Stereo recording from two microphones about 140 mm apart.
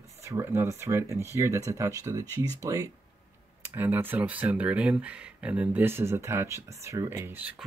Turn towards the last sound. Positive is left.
turn(degrees=-15)  # may be behind; listen again after turning